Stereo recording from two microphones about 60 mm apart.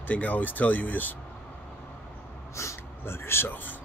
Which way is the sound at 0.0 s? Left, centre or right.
Left.